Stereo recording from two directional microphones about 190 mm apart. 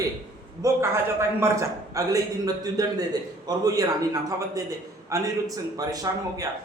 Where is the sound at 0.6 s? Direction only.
15° right (ahead or behind).